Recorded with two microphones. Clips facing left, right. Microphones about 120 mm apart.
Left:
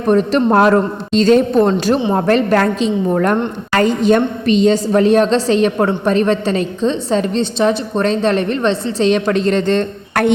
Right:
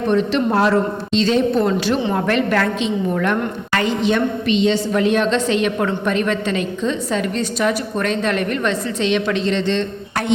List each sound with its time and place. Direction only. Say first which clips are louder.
0.1 s a man's voice: left 6 dB; 40° left (ahead or behind)